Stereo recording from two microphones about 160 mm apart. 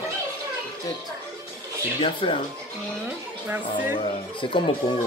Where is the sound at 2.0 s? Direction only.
35° left (ahead or behind).